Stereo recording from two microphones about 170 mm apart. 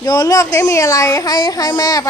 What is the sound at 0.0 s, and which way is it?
Speech, 20° left (ahead or behind).